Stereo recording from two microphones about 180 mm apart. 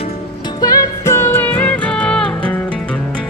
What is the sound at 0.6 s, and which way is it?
Music, 20° left (ahead or behind).